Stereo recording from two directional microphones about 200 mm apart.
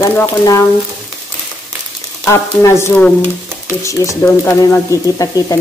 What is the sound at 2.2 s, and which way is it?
Speech, 15° left (ahead or behind).